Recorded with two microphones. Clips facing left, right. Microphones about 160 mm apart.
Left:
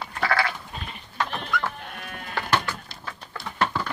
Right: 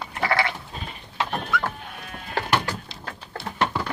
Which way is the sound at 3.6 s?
25° right (ahead or behind).